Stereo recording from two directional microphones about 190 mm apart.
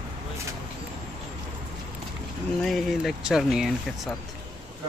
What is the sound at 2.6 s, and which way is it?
Speech, centre (ahead or behind).